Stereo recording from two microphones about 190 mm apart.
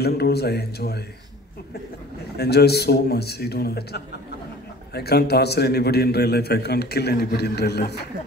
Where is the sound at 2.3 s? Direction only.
60° left (ahead or behind).